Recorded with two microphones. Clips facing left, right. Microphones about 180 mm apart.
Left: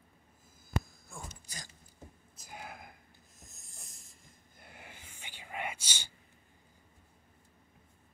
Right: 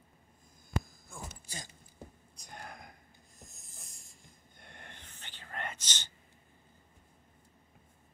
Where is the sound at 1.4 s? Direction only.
25° right (ahead or behind).